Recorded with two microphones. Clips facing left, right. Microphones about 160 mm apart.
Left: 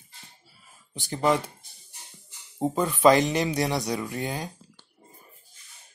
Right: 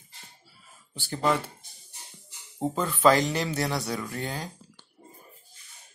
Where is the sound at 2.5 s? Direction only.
15° left (ahead or behind).